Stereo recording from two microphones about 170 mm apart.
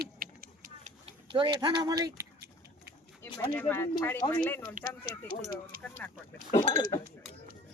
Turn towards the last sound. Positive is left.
turn(degrees=-45)  # may be behind; listen again after turning